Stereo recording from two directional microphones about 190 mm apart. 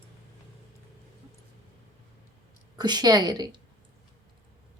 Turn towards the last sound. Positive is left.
turn(degrees=-20)  # may be behind; listen again after turning